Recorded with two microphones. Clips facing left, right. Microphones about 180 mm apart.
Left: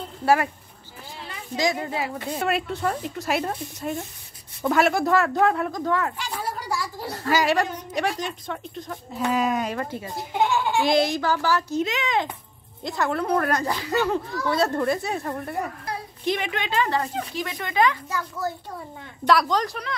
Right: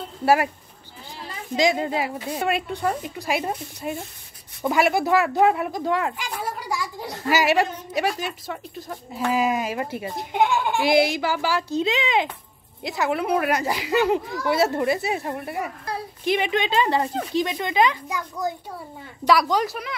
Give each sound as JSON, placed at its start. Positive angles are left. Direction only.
{"t": 0.2, "sound": "speech", "side_deg": -10}
{"t": 1.6, "sound": "a child's voice", "side_deg": -15}
{"t": 2.3, "sound": "a child's voice", "side_deg": 0}
{"t": 12.8, "sound": "a child's voice", "side_deg": -5}
{"t": 19.2, "sound": "speech", "side_deg": -5}